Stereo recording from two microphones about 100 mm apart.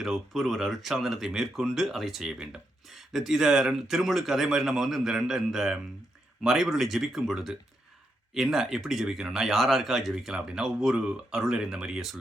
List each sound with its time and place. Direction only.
0.0 s speech: centre (ahead or behind)